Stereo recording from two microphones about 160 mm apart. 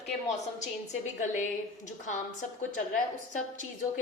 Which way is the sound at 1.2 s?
50° left (ahead or behind).